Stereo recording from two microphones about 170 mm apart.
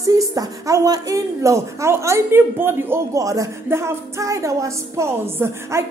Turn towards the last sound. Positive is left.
turn(degrees=-15)  # may be behind; listen again after turning